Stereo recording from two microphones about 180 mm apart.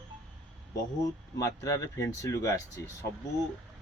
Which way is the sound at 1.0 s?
20° left (ahead or behind).